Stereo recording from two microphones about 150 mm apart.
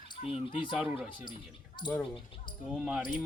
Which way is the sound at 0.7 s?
5° right (ahead or behind).